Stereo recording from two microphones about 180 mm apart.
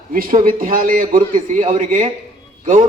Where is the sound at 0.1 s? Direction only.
50° right (ahead or behind).